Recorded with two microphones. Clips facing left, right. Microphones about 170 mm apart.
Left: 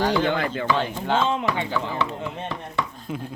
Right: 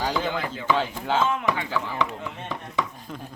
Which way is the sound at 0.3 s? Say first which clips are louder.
Left 5 dB; 65° left (ahead or behind).